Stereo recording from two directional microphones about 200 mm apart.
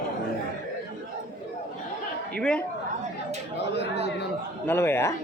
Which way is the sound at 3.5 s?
60° left (ahead or behind).